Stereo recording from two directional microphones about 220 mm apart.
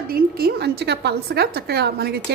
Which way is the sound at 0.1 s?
45° right (ahead or behind).